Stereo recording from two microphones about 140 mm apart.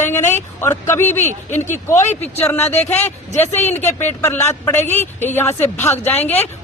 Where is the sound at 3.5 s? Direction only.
15° left (ahead or behind).